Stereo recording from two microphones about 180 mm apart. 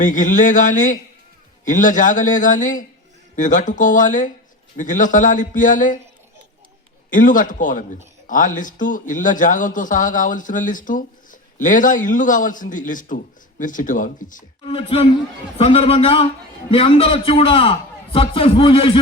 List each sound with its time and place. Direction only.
0.0 s a man's voice: 45° left (ahead or behind)
7.1 s a man's voice: 45° left (ahead or behind)
14.7 s a man's voice: 30° left (ahead or behind)